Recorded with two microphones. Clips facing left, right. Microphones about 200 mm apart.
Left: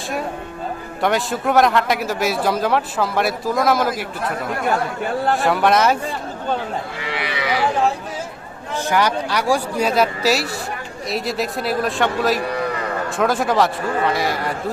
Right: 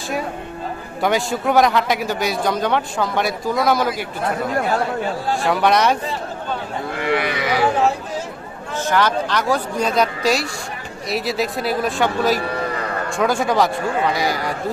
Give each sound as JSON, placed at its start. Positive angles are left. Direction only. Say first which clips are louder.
{"t": 1.0, "sound": "a man's voice", "louder": "even", "side_deg": 0}
{"t": 4.6, "sound": "speech", "louder": "right 1 dB", "side_deg": 60}
{"t": 5.4, "sound": "a man's voice", "louder": "right 1 dB", "side_deg": 0}
{"t": 6.9, "sound": "livestock", "louder": "right 6 dB", "side_deg": -55}
{"t": 8.9, "sound": "a man's voice", "louder": "right 1 dB", "side_deg": 10}